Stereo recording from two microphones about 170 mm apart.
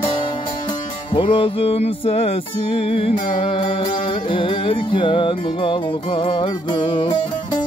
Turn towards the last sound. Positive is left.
turn(degrees=30)  # may be behind; listen again after turning